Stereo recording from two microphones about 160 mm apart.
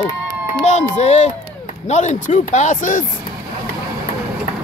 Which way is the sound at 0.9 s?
45° left (ahead or behind).